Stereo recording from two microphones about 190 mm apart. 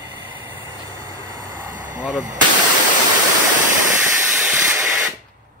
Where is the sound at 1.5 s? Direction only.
45° right (ahead or behind).